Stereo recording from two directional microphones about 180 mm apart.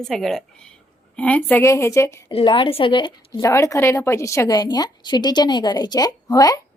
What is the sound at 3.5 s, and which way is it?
A woman's voice, 15° left (ahead or behind).